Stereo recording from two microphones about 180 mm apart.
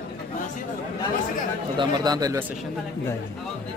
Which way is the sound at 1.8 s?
25° right (ahead or behind).